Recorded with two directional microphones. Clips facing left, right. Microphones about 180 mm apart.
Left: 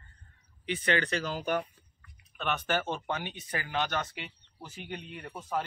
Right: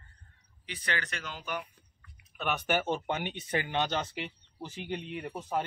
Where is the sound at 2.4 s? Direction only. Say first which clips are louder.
Right 1 dB; 10° right (ahead or behind).